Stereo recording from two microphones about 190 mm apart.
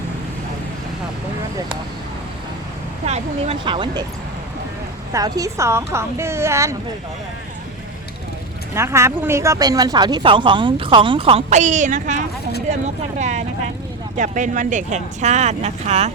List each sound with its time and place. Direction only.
3.1 s speech: 35° right (ahead or behind)
5.1 s a woman's voice: 15° right (ahead or behind)
8.7 s a woman's voice: 15° right (ahead or behind); by 11.4 s 30° right (ahead or behind)
11.4 s speech: 40° right (ahead or behind)